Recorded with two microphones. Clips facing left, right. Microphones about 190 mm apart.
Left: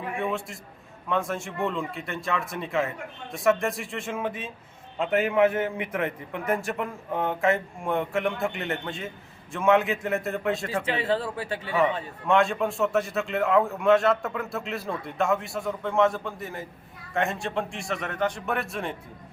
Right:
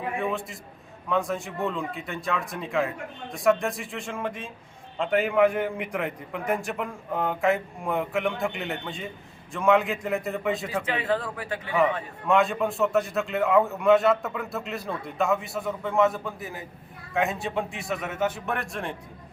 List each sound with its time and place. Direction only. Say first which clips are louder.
0.2 s a man's voice: even; centre (ahead or behind)
11.3 s a man's voice: left 1 dB; 30° left (ahead or behind)
12.3 s a man's voice: even; centre (ahead or behind)